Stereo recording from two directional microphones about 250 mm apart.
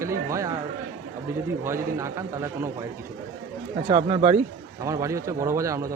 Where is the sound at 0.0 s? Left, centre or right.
Centre.